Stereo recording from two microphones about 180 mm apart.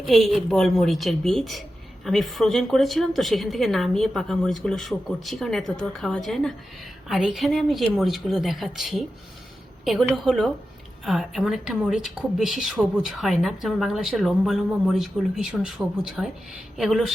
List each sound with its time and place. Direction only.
0.1 s a woman's voice: centre (ahead or behind)